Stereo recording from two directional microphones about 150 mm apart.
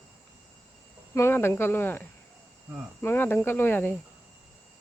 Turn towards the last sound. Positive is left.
turn(degrees=15)  # may be behind; listen again after turning